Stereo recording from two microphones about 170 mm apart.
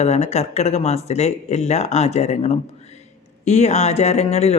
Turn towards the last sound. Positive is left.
turn(degrees=40)  # may be behind; listen again after turning